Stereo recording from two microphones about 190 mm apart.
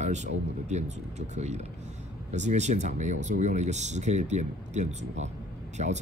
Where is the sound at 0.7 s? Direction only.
35° right (ahead or behind).